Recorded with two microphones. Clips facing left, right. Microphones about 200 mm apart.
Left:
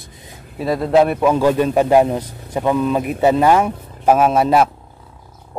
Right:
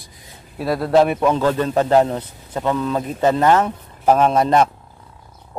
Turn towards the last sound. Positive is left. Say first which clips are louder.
# left 1 dB
turn(degrees=5)  # may be behind; listen again after turning